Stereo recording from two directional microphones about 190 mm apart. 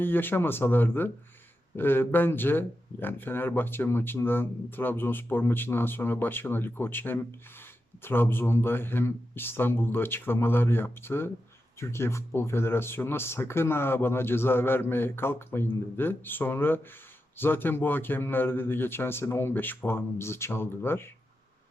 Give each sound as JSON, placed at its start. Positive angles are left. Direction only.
{"t": 0.0, "sound": "speech", "side_deg": 10}